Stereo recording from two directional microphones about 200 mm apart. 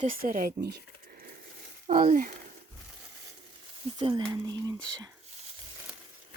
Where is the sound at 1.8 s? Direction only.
35° right (ahead or behind).